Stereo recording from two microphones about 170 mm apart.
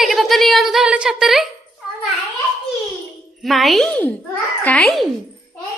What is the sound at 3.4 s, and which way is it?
A woman's voice, centre (ahead or behind).